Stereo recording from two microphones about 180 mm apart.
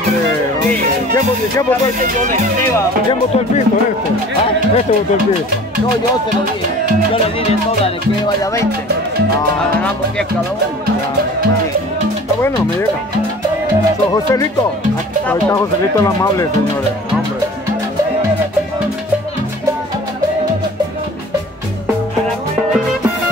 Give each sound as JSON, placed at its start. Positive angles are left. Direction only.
{"t": 1.1, "sound": "speech", "side_deg": 20}
{"t": 3.1, "sound": "speech", "side_deg": 35}
{"t": 15.2, "sound": "speech", "side_deg": 15}